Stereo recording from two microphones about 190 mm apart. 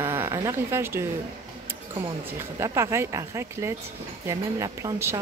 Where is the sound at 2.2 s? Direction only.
15° right (ahead or behind).